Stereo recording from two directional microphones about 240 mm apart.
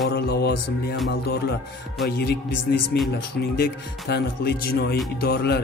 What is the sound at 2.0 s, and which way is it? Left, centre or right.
A man's voice, left.